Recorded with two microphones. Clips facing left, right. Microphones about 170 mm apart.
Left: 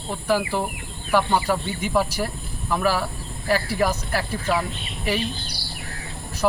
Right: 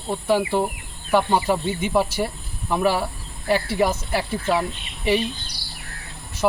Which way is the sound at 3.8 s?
Centre (ahead or behind).